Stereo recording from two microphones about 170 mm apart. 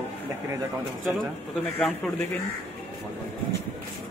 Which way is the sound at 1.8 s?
10° left (ahead or behind).